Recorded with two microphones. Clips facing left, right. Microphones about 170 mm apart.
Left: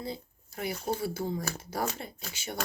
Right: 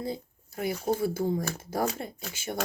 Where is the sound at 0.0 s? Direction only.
50° right (ahead or behind).